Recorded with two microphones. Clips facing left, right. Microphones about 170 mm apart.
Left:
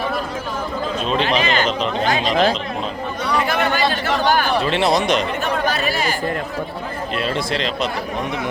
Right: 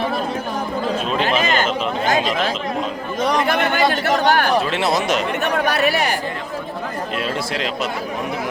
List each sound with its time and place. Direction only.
1.4 s speech: 45° right (ahead or behind)
2.3 s speech: 30° left (ahead or behind)
3.3 s speech: 55° right (ahead or behind)
4.6 s speech: 5° right (ahead or behind)
5.4 s speech: 65° right (ahead or behind)
7.2 s speech: 5° right (ahead or behind)